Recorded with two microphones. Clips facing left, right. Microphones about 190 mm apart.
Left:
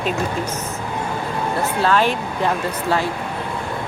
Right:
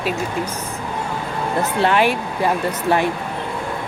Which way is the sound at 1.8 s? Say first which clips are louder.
Right 1 dB; 15° right (ahead or behind).